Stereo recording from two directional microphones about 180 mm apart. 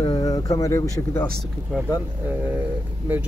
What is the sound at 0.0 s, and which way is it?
Speech, 25° left (ahead or behind).